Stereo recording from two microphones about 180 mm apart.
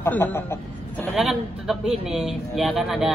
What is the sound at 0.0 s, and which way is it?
Speech, 10° left (ahead or behind).